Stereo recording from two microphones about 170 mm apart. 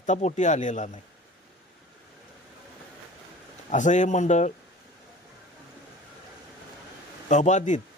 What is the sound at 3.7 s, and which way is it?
Speech, 45° left (ahead or behind).